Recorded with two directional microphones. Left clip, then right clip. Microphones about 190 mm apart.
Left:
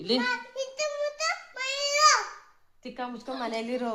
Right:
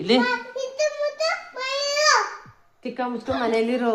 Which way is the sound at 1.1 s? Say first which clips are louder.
Right 6 dB; 15° left (ahead or behind).